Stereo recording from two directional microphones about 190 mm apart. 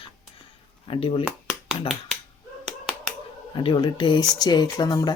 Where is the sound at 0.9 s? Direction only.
30° left (ahead or behind).